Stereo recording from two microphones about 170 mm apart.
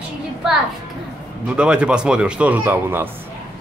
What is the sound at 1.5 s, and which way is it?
Speech, 5° right (ahead or behind).